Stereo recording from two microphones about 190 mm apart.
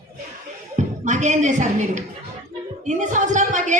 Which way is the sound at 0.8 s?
40° right (ahead or behind).